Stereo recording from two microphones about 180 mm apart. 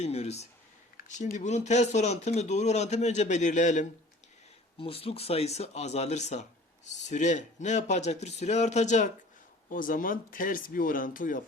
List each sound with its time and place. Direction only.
0.0 s speech: 35° left (ahead or behind)
4.8 s speech: 30° left (ahead or behind); by 11.4 s 50° left (ahead or behind)